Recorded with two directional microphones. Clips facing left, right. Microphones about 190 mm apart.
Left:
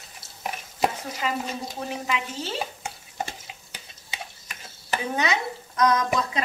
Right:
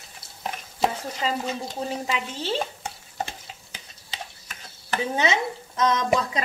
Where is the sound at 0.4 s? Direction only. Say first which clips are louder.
Even; 10° left (ahead or behind).